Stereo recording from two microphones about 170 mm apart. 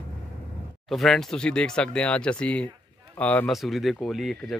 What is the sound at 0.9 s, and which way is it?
Speech, centre (ahead or behind).